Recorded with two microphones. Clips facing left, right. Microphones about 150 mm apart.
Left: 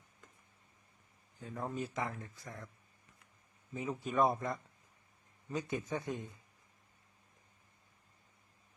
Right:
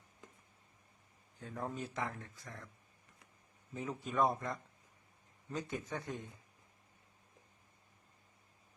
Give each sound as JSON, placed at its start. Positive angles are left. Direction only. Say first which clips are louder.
{"t": 1.4, "sound": "speech", "louder": "left 2 dB", "side_deg": 0}
{"t": 3.8, "sound": "speech", "louder": "left 2 dB", "side_deg": 5}